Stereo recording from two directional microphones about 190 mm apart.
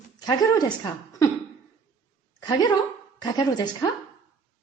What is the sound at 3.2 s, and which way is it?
Speech, 20° left (ahead or behind).